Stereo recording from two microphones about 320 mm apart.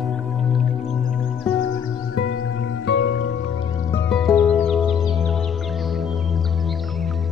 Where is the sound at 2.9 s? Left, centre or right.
Left.